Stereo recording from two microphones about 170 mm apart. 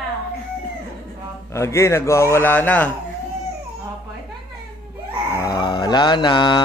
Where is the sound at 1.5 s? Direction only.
15° left (ahead or behind).